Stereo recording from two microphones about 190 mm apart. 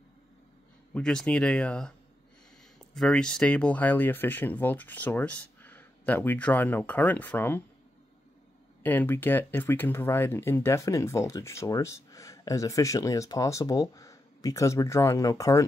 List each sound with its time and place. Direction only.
0.9 s speech: 5° left (ahead or behind)
8.8 s speech: 10° left (ahead or behind)